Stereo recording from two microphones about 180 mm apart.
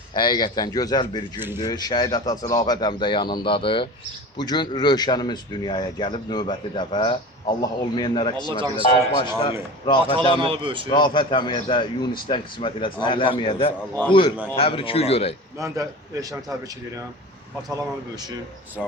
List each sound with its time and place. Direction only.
0.1 s a man's voice: 25° left (ahead or behind)
10.4 s speech: 30° right (ahead or behind)
10.8 s a man's voice: 25° left (ahead or behind)
15.5 s a man's voice: 15° right (ahead or behind)
18.8 s speech: centre (ahead or behind)